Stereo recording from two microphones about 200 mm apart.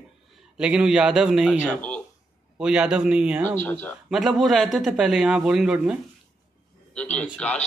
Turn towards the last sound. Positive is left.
turn(degrees=5)  # may be behind; listen again after turning